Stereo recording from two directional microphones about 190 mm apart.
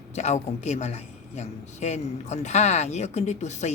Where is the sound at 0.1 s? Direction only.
35° left (ahead or behind).